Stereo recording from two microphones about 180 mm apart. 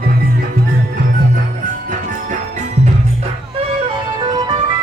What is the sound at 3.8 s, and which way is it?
Music, 25° right (ahead or behind).